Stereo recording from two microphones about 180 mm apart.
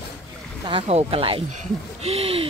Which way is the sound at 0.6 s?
30° right (ahead or behind).